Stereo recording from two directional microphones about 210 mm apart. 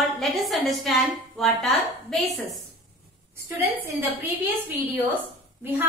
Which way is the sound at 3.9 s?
10° right (ahead or behind).